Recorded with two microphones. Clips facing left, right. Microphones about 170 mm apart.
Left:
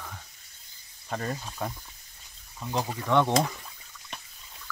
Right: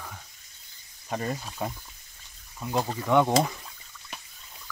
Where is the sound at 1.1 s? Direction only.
10° right (ahead or behind).